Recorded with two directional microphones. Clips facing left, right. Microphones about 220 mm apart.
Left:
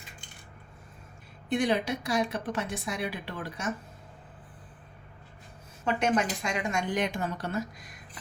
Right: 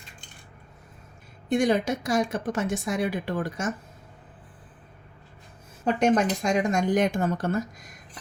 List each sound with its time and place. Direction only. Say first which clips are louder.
1.5 s a woman's voice: right 4 dB; 45° right (ahead or behind)
5.8 s a woman's voice: right 5 dB; 40° right (ahead or behind)